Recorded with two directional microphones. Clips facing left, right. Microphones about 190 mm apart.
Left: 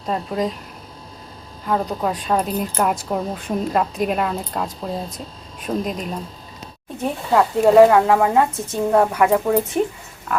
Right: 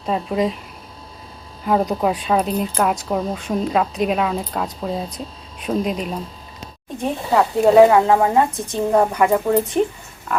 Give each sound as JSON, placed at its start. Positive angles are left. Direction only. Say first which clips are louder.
{"t": 0.0, "sound": "speech", "louder": "right 2 dB", "side_deg": -5}
{"t": 1.6, "sound": "speech", "louder": "right 3 dB", "side_deg": -15}
{"t": 5.0, "sound": "speech", "louder": "right 2 dB", "side_deg": 50}
{"t": 5.6, "sound": "speech", "louder": "right 2 dB", "side_deg": -5}
{"t": 8.9, "sound": "speech", "louder": "even", "side_deg": -5}